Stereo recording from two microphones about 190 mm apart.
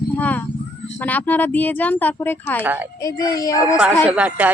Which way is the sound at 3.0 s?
20° left (ahead or behind).